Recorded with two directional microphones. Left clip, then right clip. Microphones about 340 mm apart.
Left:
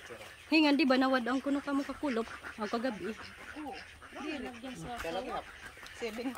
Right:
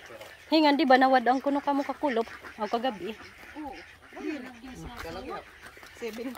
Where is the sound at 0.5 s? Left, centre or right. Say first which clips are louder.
Right 6 dB; centre.